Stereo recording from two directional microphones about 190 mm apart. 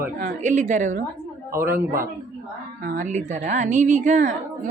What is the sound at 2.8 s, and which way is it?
A woman's voice, 40° right (ahead or behind).